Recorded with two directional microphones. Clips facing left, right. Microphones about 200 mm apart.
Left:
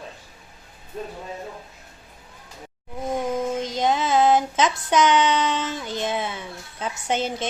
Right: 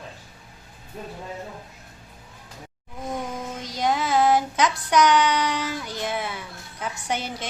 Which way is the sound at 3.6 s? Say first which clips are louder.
Left 2 dB; 25° left (ahead or behind).